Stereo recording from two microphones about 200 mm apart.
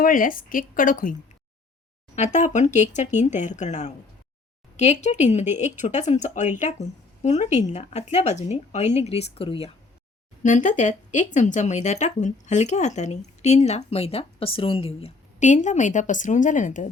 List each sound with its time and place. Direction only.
0.0 s speech: 45° left (ahead or behind)
2.1 s speech: 35° left (ahead or behind)
10.4 s speech: 40° left (ahead or behind)